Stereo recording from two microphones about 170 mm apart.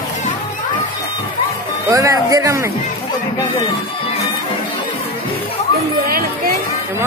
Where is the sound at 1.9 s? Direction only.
20° right (ahead or behind).